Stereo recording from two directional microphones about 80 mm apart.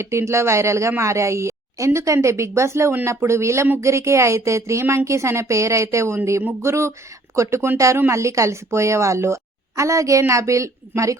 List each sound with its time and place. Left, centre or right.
0.0 s speech: right